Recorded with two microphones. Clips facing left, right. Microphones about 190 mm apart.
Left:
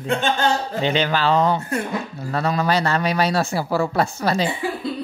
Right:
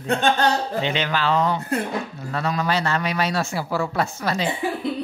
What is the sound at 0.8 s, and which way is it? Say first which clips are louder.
Speech: left 6 dB; 35° left (ahead or behind).